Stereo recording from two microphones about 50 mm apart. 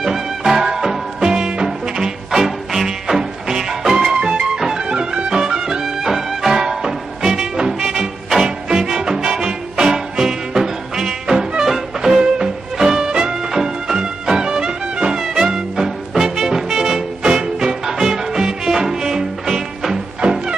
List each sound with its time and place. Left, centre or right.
0.0 s music: centre
20.2 s music: centre